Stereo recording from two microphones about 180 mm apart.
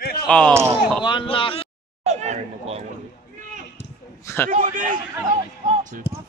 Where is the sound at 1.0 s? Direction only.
30° left (ahead or behind).